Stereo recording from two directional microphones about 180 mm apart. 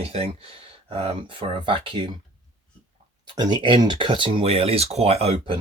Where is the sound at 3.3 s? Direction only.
25° right (ahead or behind).